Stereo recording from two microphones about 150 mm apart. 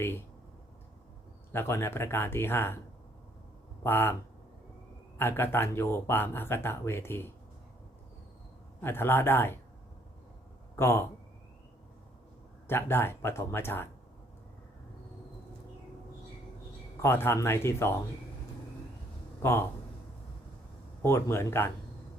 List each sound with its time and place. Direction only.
0.0 s speech: 15° left (ahead or behind)
1.5 s speech: 15° left (ahead or behind)
3.8 s speech: 15° left (ahead or behind)
5.1 s speech: 15° left (ahead or behind)
8.8 s speech: 15° left (ahead or behind)
10.8 s speech: 15° left (ahead or behind)
12.6 s speech: 15° left (ahead or behind)
17.0 s speech: 15° left (ahead or behind)
19.4 s speech: 15° left (ahead or behind)
21.0 s speech: 15° left (ahead or behind)